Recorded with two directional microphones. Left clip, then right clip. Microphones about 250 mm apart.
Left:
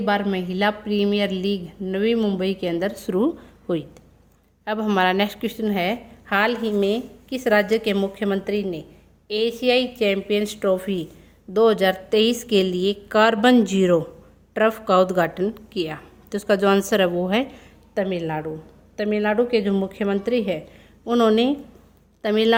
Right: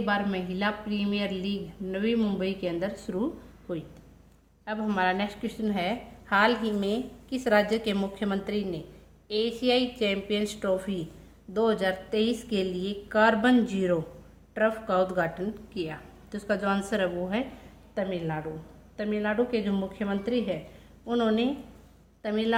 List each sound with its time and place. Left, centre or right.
0.0 s a woman's voice: left